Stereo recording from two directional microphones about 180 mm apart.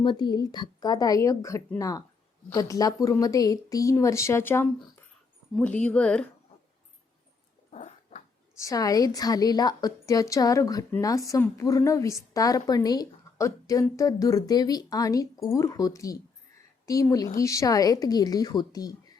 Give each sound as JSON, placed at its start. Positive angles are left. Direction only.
{"t": 0.0, "sound": "a woman's voice", "side_deg": 25}
{"t": 7.7, "sound": "dog", "side_deg": 40}
{"t": 8.5, "sound": "a woman's voice", "side_deg": 20}